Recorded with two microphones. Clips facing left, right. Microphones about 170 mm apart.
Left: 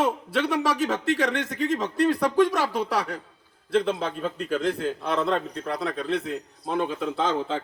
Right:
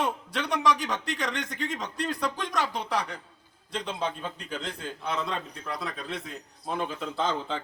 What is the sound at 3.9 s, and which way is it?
A man's voice, 55° left (ahead or behind).